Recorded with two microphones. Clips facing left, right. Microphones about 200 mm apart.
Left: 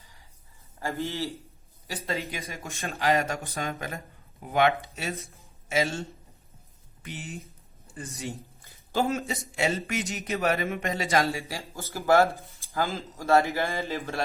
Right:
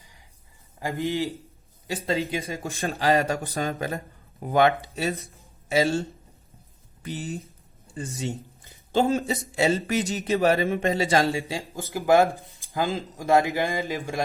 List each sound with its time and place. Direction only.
0.8 s a man's voice: 15° right (ahead or behind)
1.9 s speech: 30° right (ahead or behind)
7.9 s speech: 20° right (ahead or behind)